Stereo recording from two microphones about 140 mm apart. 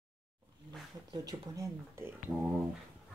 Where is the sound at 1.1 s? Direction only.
25° right (ahead or behind).